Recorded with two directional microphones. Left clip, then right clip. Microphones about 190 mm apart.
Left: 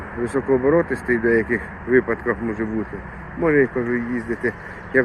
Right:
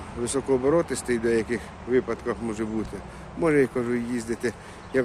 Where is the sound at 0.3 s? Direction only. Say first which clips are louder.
Left 4 dB; 25° right (ahead or behind).